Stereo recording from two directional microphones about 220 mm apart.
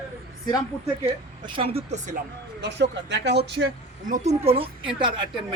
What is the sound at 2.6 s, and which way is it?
Speech, 50° right (ahead or behind).